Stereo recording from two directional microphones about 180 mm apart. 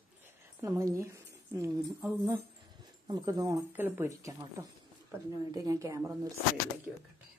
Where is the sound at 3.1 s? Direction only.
20° right (ahead or behind).